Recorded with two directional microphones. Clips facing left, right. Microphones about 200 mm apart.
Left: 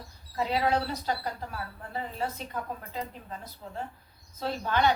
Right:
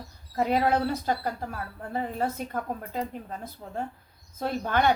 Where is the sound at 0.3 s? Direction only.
50° right (ahead or behind).